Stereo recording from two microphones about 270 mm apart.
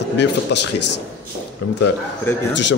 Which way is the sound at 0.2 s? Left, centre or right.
Left.